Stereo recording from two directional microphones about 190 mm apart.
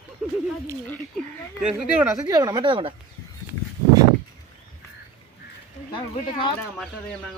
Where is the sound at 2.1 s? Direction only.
20° right (ahead or behind).